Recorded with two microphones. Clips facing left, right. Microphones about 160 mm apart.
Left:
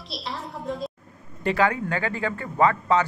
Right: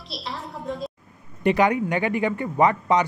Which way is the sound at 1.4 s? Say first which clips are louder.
Right 3 dB; 20° right (ahead or behind).